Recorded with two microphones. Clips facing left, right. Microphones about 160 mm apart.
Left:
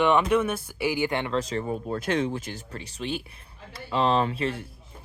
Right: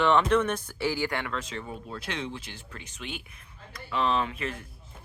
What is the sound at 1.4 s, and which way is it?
Speech, 40° left (ahead or behind).